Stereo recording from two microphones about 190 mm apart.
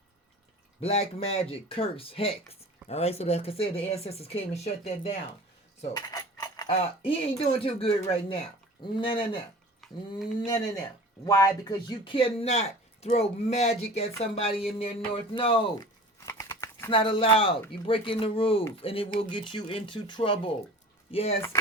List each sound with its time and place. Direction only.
0.8 s speech: 35° left (ahead or behind)
5.9 s cutlery: 20° left (ahead or behind)
6.7 s speech: 30° left (ahead or behind)
9.8 s a sound: centre (ahead or behind)
11.3 s speech: 15° left (ahead or behind)
16.2 s a sound: 20° left (ahead or behind)
16.9 s speech: 30° left (ahead or behind)